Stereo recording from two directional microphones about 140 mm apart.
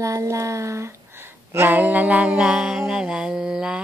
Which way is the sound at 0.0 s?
20° right (ahead or behind).